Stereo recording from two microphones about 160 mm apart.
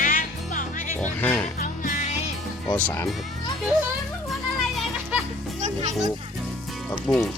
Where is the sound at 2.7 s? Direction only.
10° left (ahead or behind).